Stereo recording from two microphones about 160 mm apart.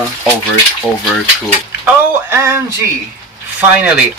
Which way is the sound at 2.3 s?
15° right (ahead or behind).